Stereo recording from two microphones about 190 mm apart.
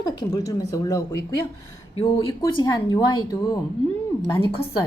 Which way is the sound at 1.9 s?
30° left (ahead or behind).